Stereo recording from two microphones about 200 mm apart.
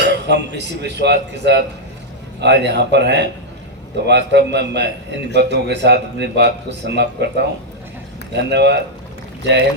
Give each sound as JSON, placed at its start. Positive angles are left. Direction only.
{"t": 0.0, "sound": "a man's voice", "side_deg": -60}